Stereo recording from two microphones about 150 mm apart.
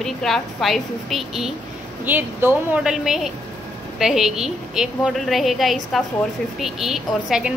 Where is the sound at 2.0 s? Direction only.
15° right (ahead or behind).